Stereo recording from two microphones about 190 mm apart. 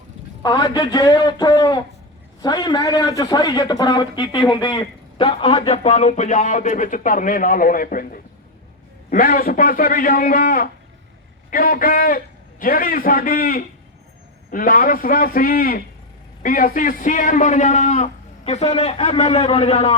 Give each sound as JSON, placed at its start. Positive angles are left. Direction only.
{"t": 0.4, "sound": "a man's voice", "side_deg": 20}